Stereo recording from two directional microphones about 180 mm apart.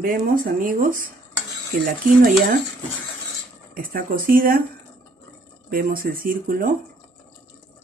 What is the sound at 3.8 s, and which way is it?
Speech, 50° right (ahead or behind).